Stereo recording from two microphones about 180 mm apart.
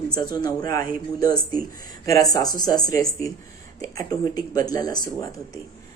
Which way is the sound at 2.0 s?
20° left (ahead or behind).